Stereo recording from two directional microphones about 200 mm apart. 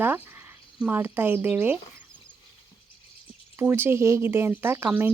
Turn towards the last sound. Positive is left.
turn(degrees=-10)  # may be behind; listen again after turning